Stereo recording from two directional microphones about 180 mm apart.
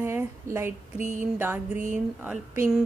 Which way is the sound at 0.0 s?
15° right (ahead or behind).